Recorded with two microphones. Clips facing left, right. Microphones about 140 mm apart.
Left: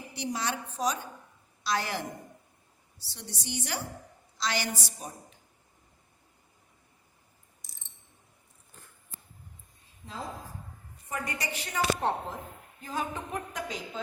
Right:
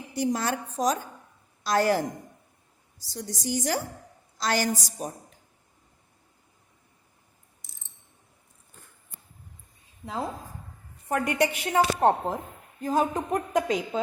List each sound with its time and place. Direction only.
0.1 s a woman's voice: 45° right (ahead or behind)
11.1 s speech: 65° right (ahead or behind)
12.8 s a woman's voice: 40° right (ahead or behind)